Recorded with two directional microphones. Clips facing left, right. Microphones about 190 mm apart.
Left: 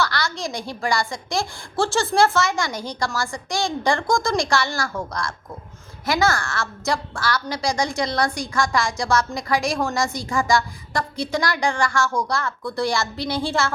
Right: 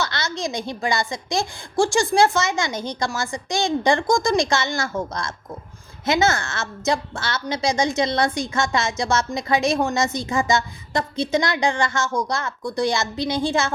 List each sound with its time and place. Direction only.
0.0 s a woman's voice: 20° right (ahead or behind)